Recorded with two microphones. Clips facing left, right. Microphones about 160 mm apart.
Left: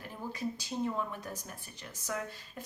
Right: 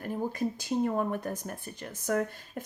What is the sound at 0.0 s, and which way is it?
Speech, 50° right (ahead or behind).